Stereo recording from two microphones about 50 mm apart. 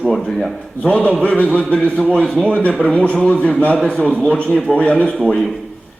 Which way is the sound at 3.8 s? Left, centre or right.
Centre.